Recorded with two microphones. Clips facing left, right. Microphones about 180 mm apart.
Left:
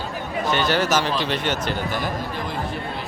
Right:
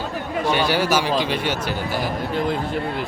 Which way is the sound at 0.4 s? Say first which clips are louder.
Right 1 dB; 10° right (ahead or behind).